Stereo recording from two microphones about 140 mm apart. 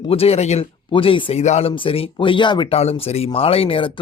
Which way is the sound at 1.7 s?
40° left (ahead or behind).